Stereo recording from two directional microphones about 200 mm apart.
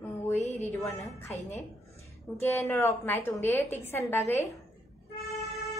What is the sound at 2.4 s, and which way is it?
A woman's voice, 10° left (ahead or behind).